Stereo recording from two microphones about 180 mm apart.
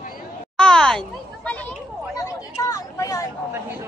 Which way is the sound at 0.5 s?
5° left (ahead or behind).